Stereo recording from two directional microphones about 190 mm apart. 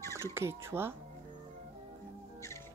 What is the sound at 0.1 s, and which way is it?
Speech, 15° right (ahead or behind).